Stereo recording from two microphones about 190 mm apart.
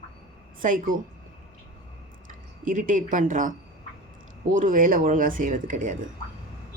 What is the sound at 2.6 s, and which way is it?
Speech, 45° right (ahead or behind).